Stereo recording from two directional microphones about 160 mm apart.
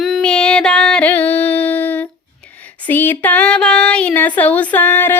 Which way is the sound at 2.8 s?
10° left (ahead or behind).